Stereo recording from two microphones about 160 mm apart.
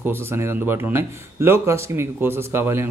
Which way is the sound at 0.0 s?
15° right (ahead or behind).